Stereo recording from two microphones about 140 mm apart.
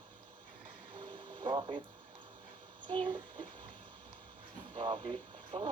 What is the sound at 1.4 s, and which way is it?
Radio, 35° right (ahead or behind).